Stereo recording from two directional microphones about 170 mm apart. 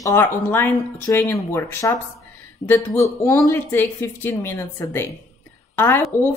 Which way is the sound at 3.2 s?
20° left (ahead or behind).